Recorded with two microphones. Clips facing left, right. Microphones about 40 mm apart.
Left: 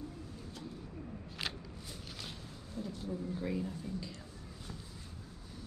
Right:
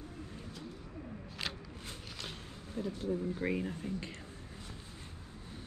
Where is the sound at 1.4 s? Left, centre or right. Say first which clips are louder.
Even; centre.